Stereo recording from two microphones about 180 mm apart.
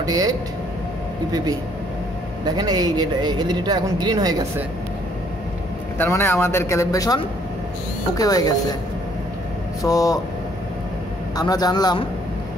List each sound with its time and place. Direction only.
0.0 s speech: 20° right (ahead or behind)
5.9 s a man's voice: 15° left (ahead or behind)
9.8 s a man's voice: 20° left (ahead or behind)
11.3 s a man's voice: 20° left (ahead or behind)